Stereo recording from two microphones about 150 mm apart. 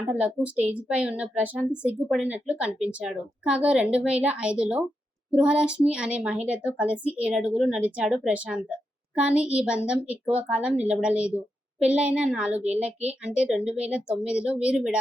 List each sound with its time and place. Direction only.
0.1 s a woman's voice: 10° right (ahead or behind)